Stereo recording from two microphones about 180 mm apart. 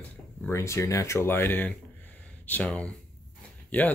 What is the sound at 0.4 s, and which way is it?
Speech, 15° left (ahead or behind).